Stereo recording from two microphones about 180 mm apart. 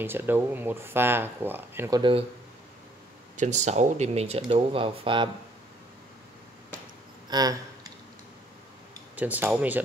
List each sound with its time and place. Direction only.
0.0 s speech: 10° right (ahead or behind)
3.3 s speech: 40° right (ahead or behind)
7.2 s a sound: 20° right (ahead or behind)
9.1 s speech: 10° right (ahead or behind)